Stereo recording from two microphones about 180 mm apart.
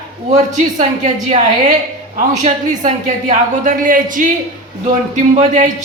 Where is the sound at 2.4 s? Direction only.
40° right (ahead or behind).